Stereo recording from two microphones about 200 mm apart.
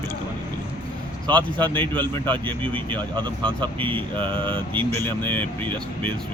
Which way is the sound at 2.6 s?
25° right (ahead or behind).